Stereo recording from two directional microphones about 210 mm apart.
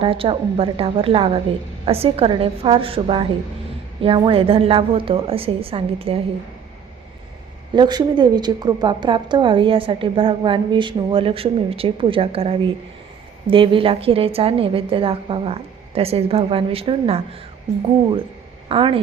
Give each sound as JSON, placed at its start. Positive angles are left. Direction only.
{"t": 0.0, "sound": "a woman's voice", "side_deg": -25}
{"t": 7.7, "sound": "a woman's voice", "side_deg": -20}
{"t": 18.7, "sound": "a woman's voice", "side_deg": -25}